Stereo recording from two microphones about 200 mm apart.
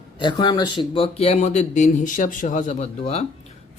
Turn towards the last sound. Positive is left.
turn(degrees=30)  # may be behind; listen again after turning